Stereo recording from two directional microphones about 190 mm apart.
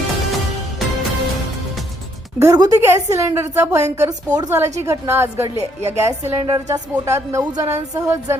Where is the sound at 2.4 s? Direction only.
20° right (ahead or behind).